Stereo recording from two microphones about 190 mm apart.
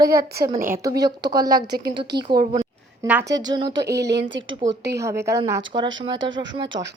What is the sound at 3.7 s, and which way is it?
Speech, 60° right (ahead or behind).